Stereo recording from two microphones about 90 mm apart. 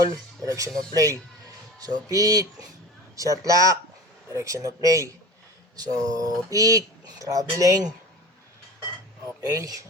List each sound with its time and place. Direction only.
0.4 s speech: 40° right (ahead or behind)
9.6 s speech: 40° right (ahead or behind)